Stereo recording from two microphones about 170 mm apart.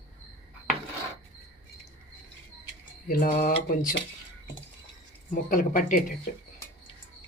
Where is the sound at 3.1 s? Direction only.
55° left (ahead or behind).